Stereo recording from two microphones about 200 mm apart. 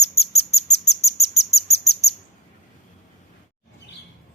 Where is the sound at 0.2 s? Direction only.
30° left (ahead or behind).